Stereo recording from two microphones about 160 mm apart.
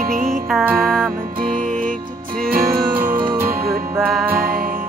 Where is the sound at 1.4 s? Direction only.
60° right (ahead or behind).